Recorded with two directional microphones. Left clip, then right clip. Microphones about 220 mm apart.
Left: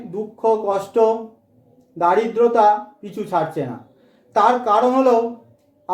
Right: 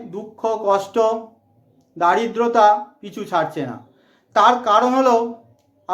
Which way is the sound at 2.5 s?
10° right (ahead or behind).